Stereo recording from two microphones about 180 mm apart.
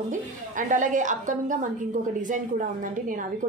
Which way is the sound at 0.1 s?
45° right (ahead or behind).